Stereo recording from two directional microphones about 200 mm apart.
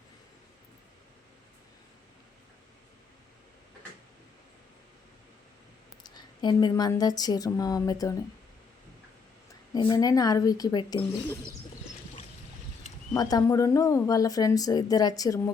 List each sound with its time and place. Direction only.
6.0 s a woman's voice: 20° left (ahead or behind)
9.7 s speech: 20° left (ahead or behind)
13.1 s a woman's voice: 20° left (ahead or behind)